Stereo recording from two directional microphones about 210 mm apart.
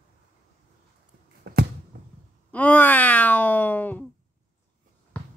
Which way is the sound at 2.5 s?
5° left (ahead or behind).